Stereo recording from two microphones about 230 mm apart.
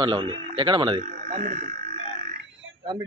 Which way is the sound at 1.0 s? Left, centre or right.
Right.